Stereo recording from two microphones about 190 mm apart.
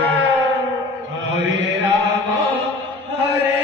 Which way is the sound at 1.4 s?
75° right (ahead or behind).